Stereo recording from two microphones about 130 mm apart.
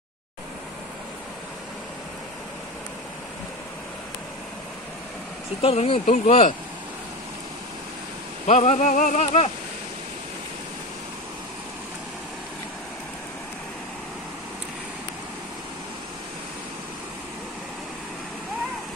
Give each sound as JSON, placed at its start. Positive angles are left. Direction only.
{"t": 5.6, "sound": "speech", "side_deg": 50}
{"t": 6.0, "sound": "rain", "side_deg": 60}
{"t": 8.5, "sound": "rain", "side_deg": 60}
{"t": 9.2, "sound": "speech", "side_deg": 50}